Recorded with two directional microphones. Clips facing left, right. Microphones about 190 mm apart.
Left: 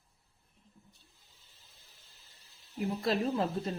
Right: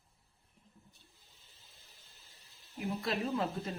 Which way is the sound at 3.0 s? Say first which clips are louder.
Left 4 dB; 35° left (ahead or behind).